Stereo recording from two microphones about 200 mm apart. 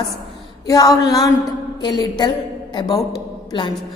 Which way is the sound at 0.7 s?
20° left (ahead or behind).